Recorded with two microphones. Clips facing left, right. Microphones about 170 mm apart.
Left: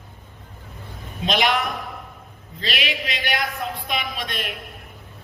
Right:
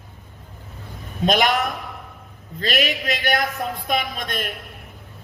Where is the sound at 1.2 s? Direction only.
45° right (ahead or behind).